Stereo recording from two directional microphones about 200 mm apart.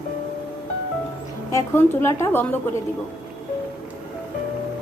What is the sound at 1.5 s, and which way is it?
A woman's voice, 15° left (ahead or behind).